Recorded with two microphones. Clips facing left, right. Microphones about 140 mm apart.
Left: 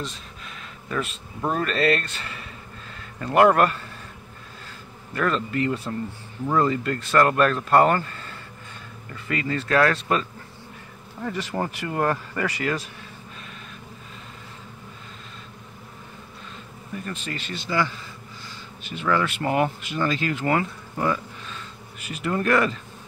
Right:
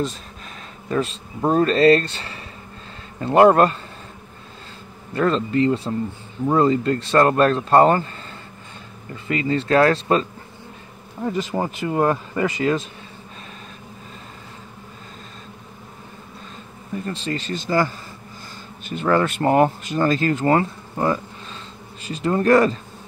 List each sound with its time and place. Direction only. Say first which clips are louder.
0.8 s speech: right 6 dB; 30° right (ahead or behind)
5.1 s speech: right 5 dB; 25° right (ahead or behind)
16.9 s speech: right 6 dB; 30° right (ahead or behind)